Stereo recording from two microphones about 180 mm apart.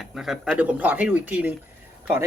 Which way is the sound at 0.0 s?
Centre (ahead or behind).